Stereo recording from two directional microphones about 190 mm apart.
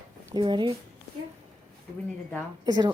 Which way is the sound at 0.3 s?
25° right (ahead or behind).